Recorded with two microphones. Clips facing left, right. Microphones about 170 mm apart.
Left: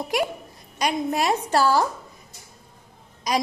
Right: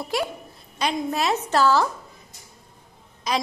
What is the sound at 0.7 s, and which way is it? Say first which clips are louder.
A woman's voice: left 1 dB; 15° left (ahead or behind).